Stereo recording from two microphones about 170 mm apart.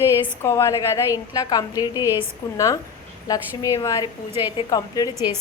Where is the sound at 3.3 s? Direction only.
20° left (ahead or behind).